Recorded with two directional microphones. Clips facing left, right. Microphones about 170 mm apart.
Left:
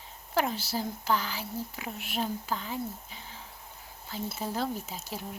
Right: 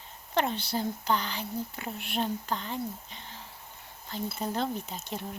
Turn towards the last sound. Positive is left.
turn(degrees=5)  # may be behind; listen again after turning